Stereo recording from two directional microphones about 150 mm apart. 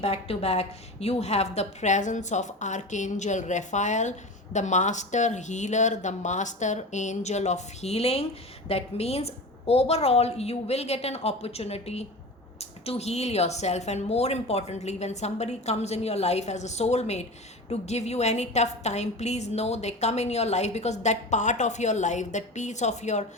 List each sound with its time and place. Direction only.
0.0 s speech: 45° left (ahead or behind)